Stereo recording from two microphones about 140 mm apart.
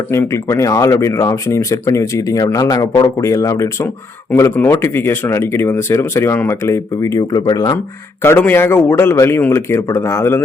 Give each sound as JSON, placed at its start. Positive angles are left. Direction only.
{"t": 0.1, "sound": "speech", "side_deg": 20}
{"t": 8.2, "sound": "a man's voice", "side_deg": 15}